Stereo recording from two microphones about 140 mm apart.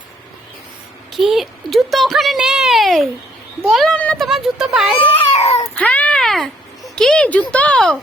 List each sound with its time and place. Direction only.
1.1 s speech: centre (ahead or behind)
4.9 s baby cry: 50° left (ahead or behind)
5.7 s speech: 10° left (ahead or behind)